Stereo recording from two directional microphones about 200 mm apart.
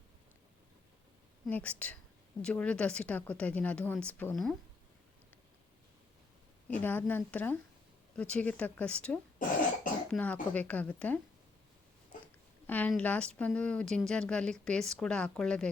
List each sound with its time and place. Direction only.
1.5 s speech: 5° left (ahead or behind)
6.7 s speech: 10° left (ahead or behind)
9.4 s cough: 40° left (ahead or behind)
10.1 s speech: 5° left (ahead or behind)
12.6 s a woman's voice: 10° left (ahead or behind)